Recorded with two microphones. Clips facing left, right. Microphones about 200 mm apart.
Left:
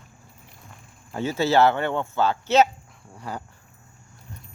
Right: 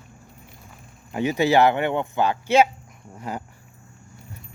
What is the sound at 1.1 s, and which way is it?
Speech, 15° right (ahead or behind).